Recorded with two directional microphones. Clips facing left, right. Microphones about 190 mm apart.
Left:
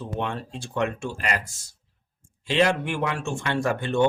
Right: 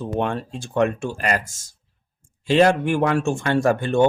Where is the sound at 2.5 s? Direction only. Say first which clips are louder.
Right 6 dB; 45° right (ahead or behind).